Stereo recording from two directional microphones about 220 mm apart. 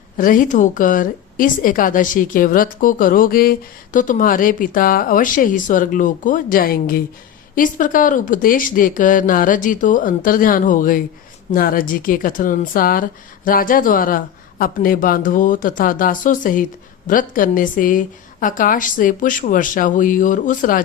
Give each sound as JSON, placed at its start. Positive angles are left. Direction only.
{"t": 0.2, "sound": "a woman's voice", "side_deg": 40}